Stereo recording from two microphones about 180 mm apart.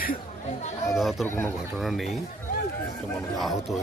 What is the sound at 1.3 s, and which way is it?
Speech, 15° left (ahead or behind).